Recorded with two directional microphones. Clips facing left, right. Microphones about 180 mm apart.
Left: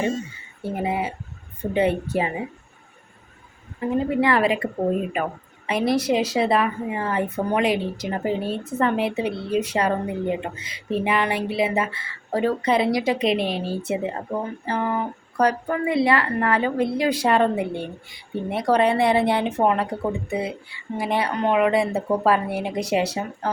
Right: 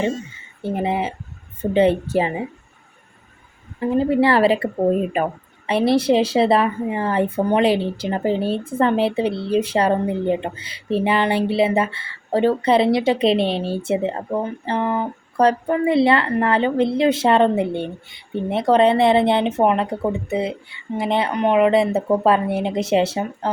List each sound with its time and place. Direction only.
0.6 s a woman's voice: 25° right (ahead or behind)
3.9 s a woman's voice: 30° right (ahead or behind)